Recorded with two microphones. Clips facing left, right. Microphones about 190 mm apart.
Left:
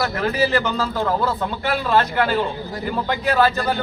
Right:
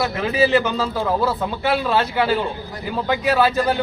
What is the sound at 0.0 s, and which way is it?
A man's voice, 20° right (ahead or behind).